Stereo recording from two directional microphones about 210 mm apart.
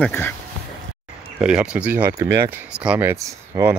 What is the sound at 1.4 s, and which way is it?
Speech, 5° right (ahead or behind).